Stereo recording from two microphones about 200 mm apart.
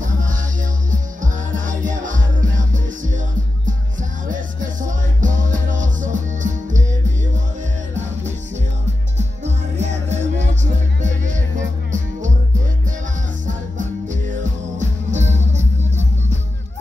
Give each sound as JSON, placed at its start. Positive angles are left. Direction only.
{"t": 0.0, "sound": "music", "side_deg": -40}
{"t": 4.3, "sound": "music", "side_deg": -40}
{"t": 9.4, "sound": "music", "side_deg": -35}
{"t": 13.7, "sound": "music", "side_deg": -40}